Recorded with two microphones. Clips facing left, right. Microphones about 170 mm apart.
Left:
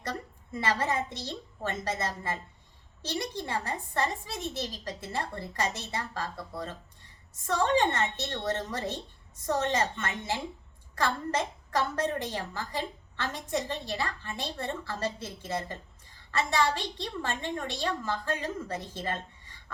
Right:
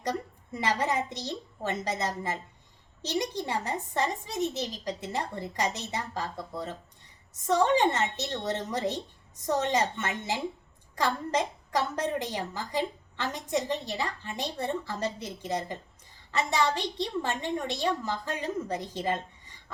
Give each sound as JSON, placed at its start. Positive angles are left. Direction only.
{"t": 0.0, "sound": "a woman's voice", "side_deg": -15}